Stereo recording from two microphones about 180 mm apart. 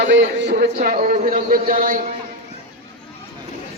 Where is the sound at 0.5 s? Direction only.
50° right (ahead or behind).